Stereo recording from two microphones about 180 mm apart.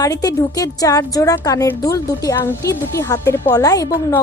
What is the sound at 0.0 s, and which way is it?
A woman's voice, 20° left (ahead or behind).